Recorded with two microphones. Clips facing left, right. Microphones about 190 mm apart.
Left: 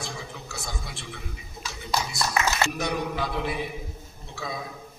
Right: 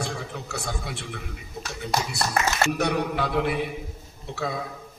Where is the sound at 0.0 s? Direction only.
70° right (ahead or behind).